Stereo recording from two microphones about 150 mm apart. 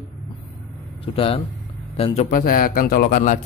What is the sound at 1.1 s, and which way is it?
Speech, 40° left (ahead or behind).